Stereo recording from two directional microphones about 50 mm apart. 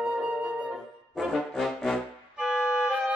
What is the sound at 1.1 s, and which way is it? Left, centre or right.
Brass instrument, centre.